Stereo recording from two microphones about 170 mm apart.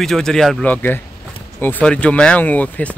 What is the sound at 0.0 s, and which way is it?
Speech, centre (ahead or behind).